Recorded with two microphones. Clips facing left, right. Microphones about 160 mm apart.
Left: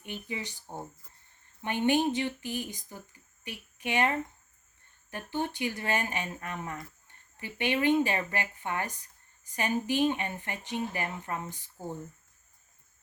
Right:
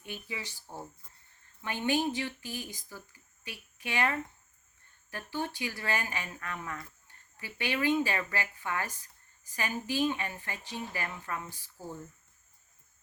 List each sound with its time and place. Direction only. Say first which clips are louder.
0.0 s speech: left 3 dB; 20° left (ahead or behind)
1.9 s speech: left 3 dB; 20° left (ahead or behind)
5.1 s speech: left 3 dB; 20° left (ahead or behind)